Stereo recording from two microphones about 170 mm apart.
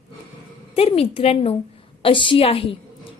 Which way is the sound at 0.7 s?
35° left (ahead or behind).